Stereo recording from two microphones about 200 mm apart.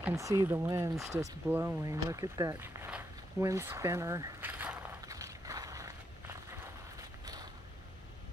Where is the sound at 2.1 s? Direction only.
15° right (ahead or behind).